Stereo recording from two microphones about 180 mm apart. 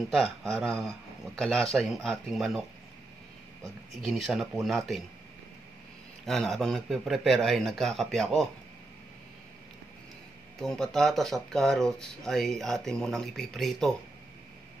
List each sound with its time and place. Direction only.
0.1 s speech: centre (ahead or behind)
4.0 s speech: centre (ahead or behind)
6.2 s speech: centre (ahead or behind)
10.6 s speech: 5° left (ahead or behind)